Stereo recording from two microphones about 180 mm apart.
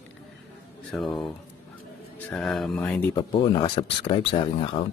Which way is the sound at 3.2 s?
25° left (ahead or behind).